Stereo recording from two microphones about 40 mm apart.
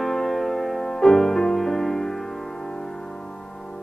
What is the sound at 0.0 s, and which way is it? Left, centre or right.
Music, centre.